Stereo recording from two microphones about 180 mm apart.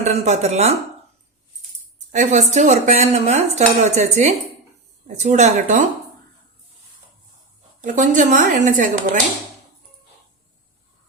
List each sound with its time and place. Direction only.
0.0 s speech: 40° right (ahead or behind)
2.1 s speech: 45° right (ahead or behind)
7.8 s a woman's voice: 45° right (ahead or behind)